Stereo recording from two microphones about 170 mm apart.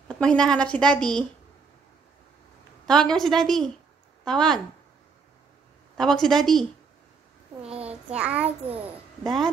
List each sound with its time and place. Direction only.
0.2 s a woman's voice: 5° left (ahead or behind)
2.9 s a woman's voice: 5° left (ahead or behind)
5.9 s a woman's voice: centre (ahead or behind)
7.6 s child singing: 5° right (ahead or behind)
8.5 s a child's voice: 35° right (ahead or behind)
9.2 s a woman's voice: centre (ahead or behind)